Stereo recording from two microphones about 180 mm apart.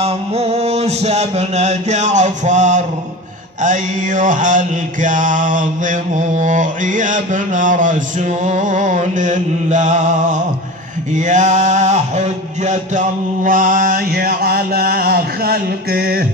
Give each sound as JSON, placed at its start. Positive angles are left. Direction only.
{"t": 0.0, "sound": "music", "side_deg": -35}
{"t": 3.6, "sound": "mantra", "side_deg": -45}